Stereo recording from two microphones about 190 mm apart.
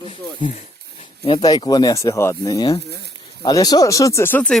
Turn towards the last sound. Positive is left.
turn(degrees=5)  # may be behind; listen again after turning